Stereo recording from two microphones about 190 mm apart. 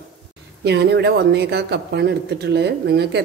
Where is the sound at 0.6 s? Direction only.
60° right (ahead or behind).